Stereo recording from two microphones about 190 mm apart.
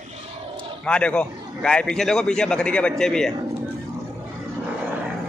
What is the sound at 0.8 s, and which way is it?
A man's voice, 5° left (ahead or behind).